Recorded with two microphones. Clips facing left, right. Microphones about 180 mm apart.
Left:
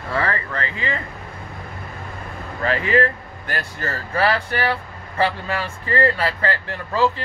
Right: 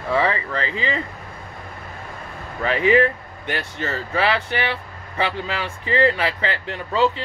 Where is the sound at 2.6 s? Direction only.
15° right (ahead or behind).